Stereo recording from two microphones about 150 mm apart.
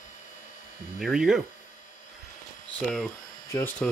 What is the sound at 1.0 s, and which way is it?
Speech, 5° right (ahead or behind).